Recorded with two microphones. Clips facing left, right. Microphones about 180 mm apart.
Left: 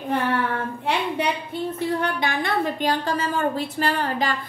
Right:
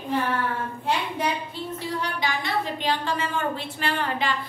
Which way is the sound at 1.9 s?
55° left (ahead or behind).